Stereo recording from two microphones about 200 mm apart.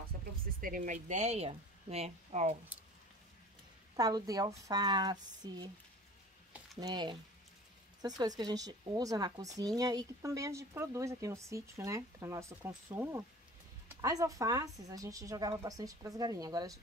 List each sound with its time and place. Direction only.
0.6 s speech: 45° right (ahead or behind)
3.9 s speech: 20° right (ahead or behind)
6.8 s speech: 20° right (ahead or behind)